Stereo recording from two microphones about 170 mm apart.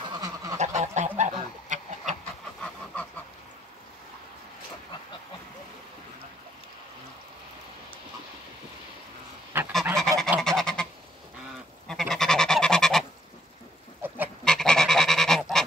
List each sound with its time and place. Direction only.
0.1 s goose: 20° right (ahead or behind)
0.6 s goose: 45° right (ahead or behind)
2.6 s chicken: 10° left (ahead or behind)
9.5 s goose: 10° right (ahead or behind)
9.9 s goose: centre (ahead or behind)
11.9 s goose: 5° left (ahead or behind)
14.0 s goose: 10° right (ahead or behind)
14.4 s goose: 5° left (ahead or behind)